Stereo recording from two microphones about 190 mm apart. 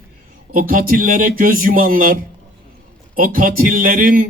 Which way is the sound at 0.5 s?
45° right (ahead or behind).